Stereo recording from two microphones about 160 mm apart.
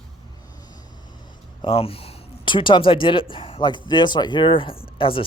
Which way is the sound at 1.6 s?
35° left (ahead or behind).